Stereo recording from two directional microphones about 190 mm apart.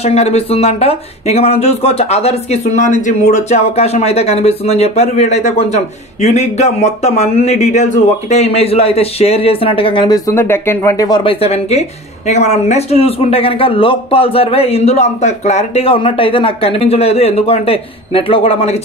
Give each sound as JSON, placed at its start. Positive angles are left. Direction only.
{"t": 0.0, "sound": "speech", "side_deg": 35}